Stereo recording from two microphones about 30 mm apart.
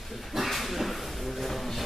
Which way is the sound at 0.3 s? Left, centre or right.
Centre.